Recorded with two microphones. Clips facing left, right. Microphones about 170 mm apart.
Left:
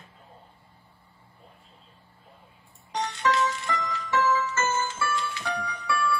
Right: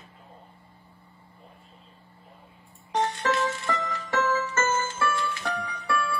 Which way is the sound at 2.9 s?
55° right (ahead or behind).